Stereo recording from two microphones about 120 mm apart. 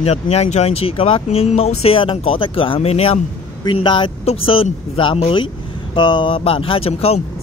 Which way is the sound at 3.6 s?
40° left (ahead or behind).